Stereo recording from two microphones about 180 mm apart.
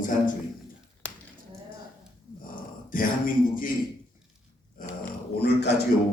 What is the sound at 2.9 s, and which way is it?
Speech, 50° left (ahead or behind).